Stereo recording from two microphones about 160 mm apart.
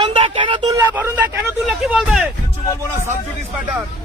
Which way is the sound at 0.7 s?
20° right (ahead or behind).